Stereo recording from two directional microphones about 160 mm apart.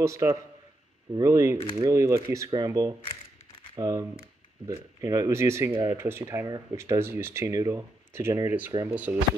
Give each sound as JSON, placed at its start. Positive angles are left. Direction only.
{"t": 0.0, "sound": "speech", "side_deg": -20}